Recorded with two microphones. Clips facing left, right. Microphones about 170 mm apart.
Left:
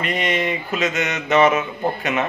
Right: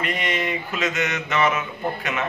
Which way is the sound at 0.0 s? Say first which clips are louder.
Left 4 dB; 20° left (ahead or behind).